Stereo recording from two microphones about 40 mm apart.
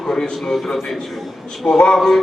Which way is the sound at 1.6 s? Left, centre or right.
Centre.